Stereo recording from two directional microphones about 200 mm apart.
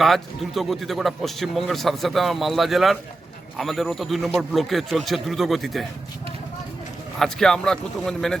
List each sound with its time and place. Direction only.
0.0 s speech: centre (ahead or behind)
7.2 s speech: 5° left (ahead or behind)